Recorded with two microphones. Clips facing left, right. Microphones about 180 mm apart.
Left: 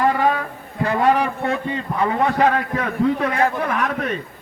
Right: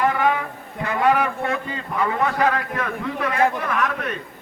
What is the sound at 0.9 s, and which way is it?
A man's voice, 35° left (ahead or behind).